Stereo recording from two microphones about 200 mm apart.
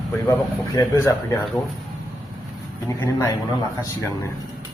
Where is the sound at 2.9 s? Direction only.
15° left (ahead or behind).